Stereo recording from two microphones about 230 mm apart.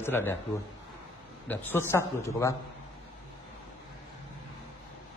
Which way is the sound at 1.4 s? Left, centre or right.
Centre.